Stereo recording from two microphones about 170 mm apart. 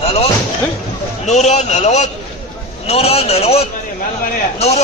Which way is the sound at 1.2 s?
40° left (ahead or behind).